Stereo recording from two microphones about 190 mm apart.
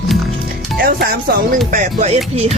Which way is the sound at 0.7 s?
55° right (ahead or behind).